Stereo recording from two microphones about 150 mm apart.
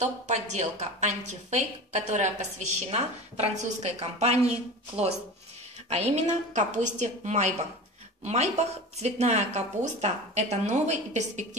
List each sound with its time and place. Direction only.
0.0 s speech: 50° right (ahead or behind)
5.9 s a woman's voice: 45° right (ahead or behind)